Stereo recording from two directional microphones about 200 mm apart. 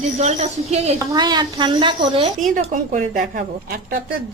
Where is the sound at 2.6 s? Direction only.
40° right (ahead or behind).